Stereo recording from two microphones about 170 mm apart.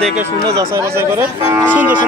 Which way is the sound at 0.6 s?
15° right (ahead or behind).